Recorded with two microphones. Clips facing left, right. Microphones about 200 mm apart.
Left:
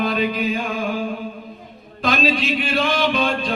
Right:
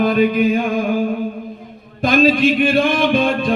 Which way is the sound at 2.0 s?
50° right (ahead or behind).